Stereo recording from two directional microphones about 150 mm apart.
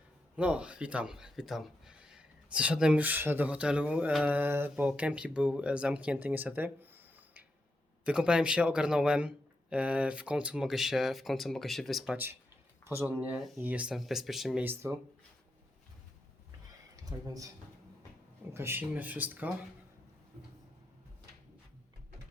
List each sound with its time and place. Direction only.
0.3 s a man's voice: 10° right (ahead or behind)
12.1 s a man's voice: 15° right (ahead or behind)
14.6 s speech: 15° right (ahead or behind)
16.9 s speech: 25° right (ahead or behind)
18.5 s speech: 15° right (ahead or behind)